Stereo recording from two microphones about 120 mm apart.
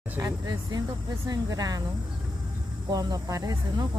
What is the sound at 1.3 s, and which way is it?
Speech, 30° right (ahead or behind).